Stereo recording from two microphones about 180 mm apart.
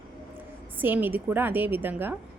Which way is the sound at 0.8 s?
10° right (ahead or behind).